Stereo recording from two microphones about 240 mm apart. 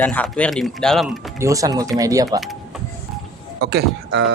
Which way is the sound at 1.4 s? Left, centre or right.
Centre.